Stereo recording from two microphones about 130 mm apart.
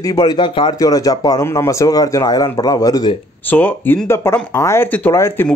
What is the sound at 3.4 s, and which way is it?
Speech, 15° left (ahead or behind).